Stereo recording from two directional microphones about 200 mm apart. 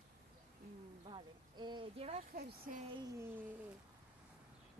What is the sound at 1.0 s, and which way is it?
Speech, 25° right (ahead or behind).